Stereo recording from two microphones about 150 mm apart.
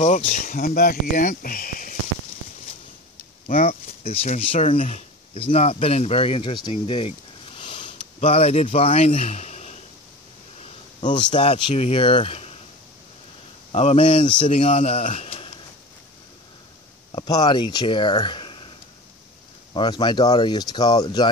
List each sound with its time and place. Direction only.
0.0 s speech: 50° left (ahead or behind)
0.6 s speech: 85° left; by 2.0 s 65° left (ahead or behind)
3.5 s speech: 40° left (ahead or behind)
11.0 s speech: 30° left (ahead or behind)
13.7 s speech: 45° left (ahead or behind)
14.1 s speech: 35° left (ahead or behind)
14.5 s speech: 50° left (ahead or behind)
17.1 s speech: 30° left (ahead or behind)
19.7 s speech: 30° left (ahead or behind)